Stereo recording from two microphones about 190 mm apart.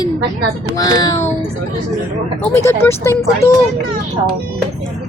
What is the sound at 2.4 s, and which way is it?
Speech, 15° left (ahead or behind).